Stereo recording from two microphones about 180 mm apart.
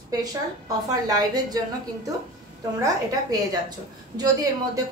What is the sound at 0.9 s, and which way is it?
Speech, 20° right (ahead or behind).